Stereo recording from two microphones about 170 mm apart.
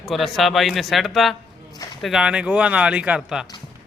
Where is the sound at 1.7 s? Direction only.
25° left (ahead or behind).